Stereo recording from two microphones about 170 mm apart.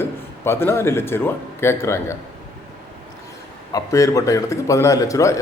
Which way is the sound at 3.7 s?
20° left (ahead or behind).